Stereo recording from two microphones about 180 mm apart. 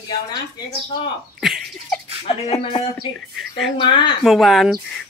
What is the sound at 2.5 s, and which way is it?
Speech, 25° left (ahead or behind).